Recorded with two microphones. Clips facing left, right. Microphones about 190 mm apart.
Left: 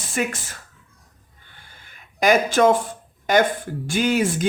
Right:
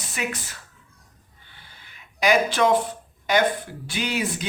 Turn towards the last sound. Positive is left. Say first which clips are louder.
# left 7 dB
turn(degrees=50)  # may be behind; listen again after turning